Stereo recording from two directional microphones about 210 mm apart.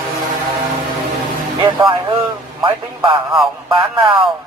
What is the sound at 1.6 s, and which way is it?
Speech, 20° right (ahead or behind).